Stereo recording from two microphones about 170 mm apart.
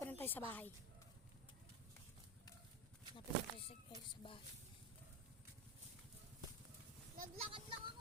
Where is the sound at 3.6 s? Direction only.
35° left (ahead or behind).